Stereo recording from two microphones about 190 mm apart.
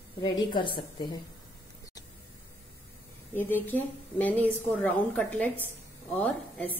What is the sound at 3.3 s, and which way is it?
A woman's voice, 10° left (ahead or behind).